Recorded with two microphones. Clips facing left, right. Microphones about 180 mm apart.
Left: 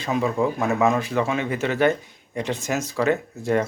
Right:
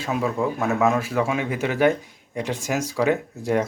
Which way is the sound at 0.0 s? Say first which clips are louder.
Left 1 dB; 5° right (ahead or behind).